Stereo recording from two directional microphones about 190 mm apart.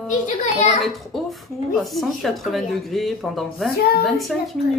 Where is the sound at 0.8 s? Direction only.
Centre (ahead or behind).